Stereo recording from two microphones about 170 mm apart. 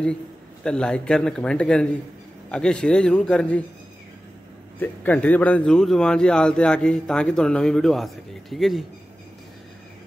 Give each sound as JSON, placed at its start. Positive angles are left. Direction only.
{"t": 0.7, "sound": "speech", "side_deg": 5}
{"t": 4.7, "sound": "speech", "side_deg": 10}